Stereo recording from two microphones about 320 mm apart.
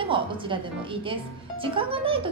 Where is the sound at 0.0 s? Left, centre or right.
Centre.